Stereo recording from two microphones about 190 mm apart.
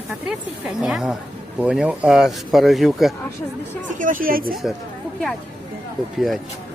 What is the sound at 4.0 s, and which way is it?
Speech, 45° right (ahead or behind).